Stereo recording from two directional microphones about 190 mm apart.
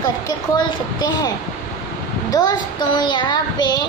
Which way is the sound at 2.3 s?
20° left (ahead or behind).